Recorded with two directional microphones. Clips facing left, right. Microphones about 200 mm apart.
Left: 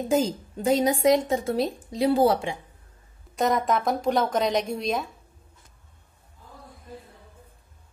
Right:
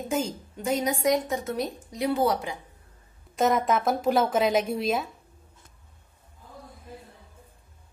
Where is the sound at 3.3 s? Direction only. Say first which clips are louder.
Even; centre (ahead or behind).